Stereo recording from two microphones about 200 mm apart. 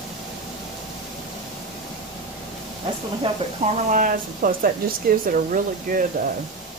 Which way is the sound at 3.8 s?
40° right (ahead or behind).